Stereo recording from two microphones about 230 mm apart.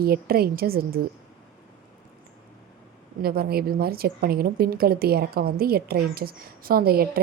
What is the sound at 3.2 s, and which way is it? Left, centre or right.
A woman's voice, right.